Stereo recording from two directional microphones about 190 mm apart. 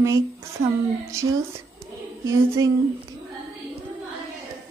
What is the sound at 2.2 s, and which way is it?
Speech, 15° right (ahead or behind).